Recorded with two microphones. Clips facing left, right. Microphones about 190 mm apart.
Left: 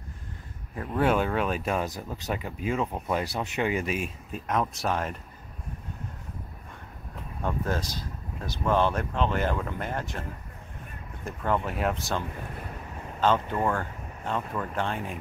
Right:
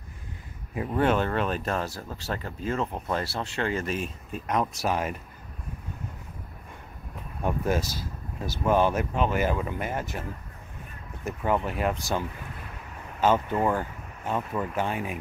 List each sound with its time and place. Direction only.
0.9 s speech: 5° left (ahead or behind)
7.4 s speech: 10° right (ahead or behind)
11.2 s speech: 5° right (ahead or behind)